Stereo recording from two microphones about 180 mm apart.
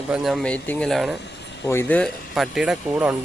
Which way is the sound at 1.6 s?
15° left (ahead or behind).